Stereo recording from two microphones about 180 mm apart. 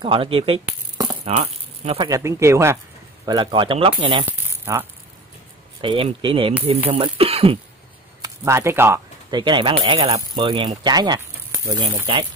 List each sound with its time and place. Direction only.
0.0 s coin: 30° right (ahead or behind)
0.9 s rattle: 30° right (ahead or behind)
2.0 s speech: 15° right (ahead or behind)
3.3 s speech: 25° right (ahead or behind)
4.3 s a sound: 15° right (ahead or behind)
5.8 s speech: 25° right (ahead or behind)
8.2 s speech: 15° right (ahead or behind)
9.3 s speech: 25° right (ahead or behind)